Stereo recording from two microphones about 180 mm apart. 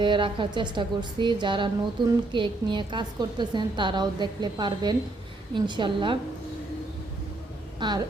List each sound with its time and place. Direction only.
0.0 s a woman's voice: 25° right (ahead or behind)
7.8 s speech: 25° right (ahead or behind)